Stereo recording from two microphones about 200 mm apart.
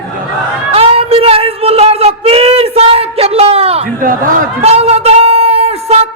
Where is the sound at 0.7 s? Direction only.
30° right (ahead or behind).